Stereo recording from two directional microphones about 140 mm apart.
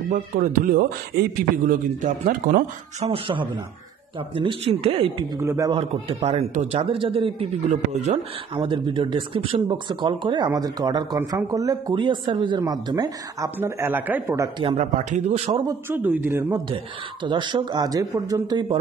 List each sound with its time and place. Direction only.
0.1 s speech: 80° right
1.6 s speech: 65° right (ahead or behind)
3.1 s speech: 40° right (ahead or behind)
5.3 s speech: 25° right (ahead or behind)
5.8 s a man's voice: 45° right (ahead or behind)
7.7 s a man's voice: 55° right (ahead or behind)
8.5 s speech: 35° right (ahead or behind)
13.6 s speech: 15° right (ahead or behind)
14.8 s a man's voice: 55° right (ahead or behind)
15.9 s speech: 10° right (ahead or behind)
16.5 s speech: 35° right (ahead or behind)